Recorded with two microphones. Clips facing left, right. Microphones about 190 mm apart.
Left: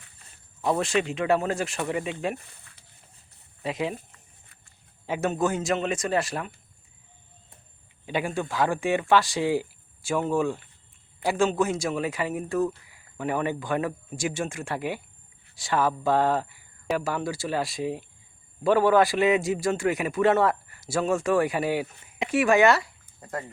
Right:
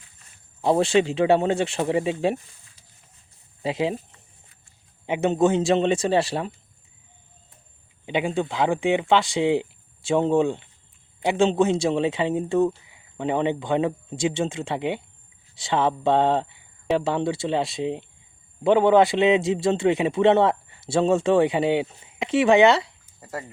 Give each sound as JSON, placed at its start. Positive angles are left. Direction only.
{"t": 0.6, "sound": "a man's voice", "side_deg": -30}
{"t": 3.6, "sound": "a man's voice", "side_deg": -30}
{"t": 8.0, "sound": "a man's voice", "side_deg": -20}